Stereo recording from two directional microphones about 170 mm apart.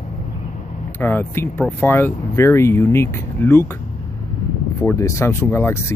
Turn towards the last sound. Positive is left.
turn(degrees=15)  # may be behind; listen again after turning